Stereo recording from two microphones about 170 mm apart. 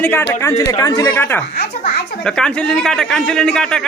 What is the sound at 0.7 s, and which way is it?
Music, 20° left (ahead or behind).